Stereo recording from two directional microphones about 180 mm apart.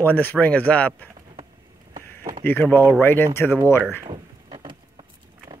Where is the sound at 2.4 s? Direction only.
10° left (ahead or behind).